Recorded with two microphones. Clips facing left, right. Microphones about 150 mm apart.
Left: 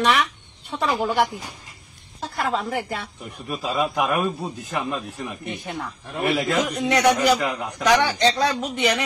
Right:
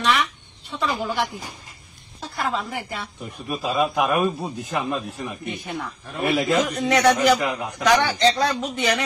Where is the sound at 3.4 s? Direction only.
10° right (ahead or behind).